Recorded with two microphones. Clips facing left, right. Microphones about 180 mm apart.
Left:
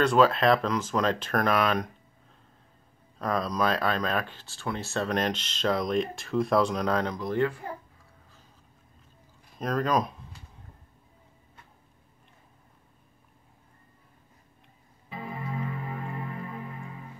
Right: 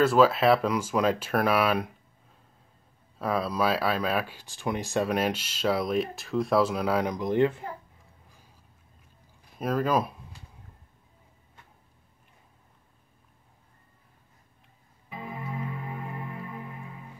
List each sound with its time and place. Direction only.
0.0 s speech: 5° right (ahead or behind)
3.2 s speech: 5° right (ahead or behind)
9.6 s speech: 5° right (ahead or behind)
15.0 s organ: 20° right (ahead or behind)